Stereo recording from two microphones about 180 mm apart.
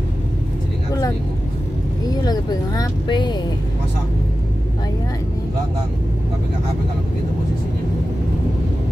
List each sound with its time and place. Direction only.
2.2 s vehicle: 20° left (ahead or behind)